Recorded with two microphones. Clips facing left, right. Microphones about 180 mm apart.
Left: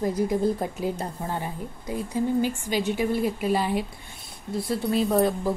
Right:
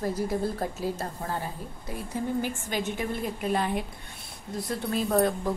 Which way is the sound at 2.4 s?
50° right (ahead or behind).